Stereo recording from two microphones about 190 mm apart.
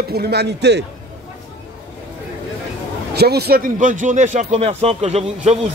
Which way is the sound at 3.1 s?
55° right (ahead or behind).